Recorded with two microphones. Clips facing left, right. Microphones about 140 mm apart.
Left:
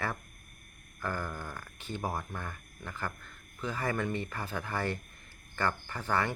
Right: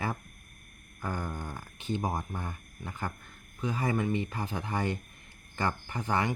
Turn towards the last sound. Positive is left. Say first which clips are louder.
# right 1 dB
turn(degrees=-15)  # may be behind; listen again after turning